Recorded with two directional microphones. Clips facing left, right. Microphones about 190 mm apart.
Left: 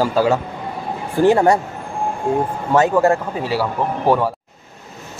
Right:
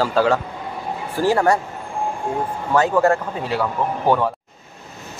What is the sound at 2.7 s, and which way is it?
A man's voice, 15° left (ahead or behind).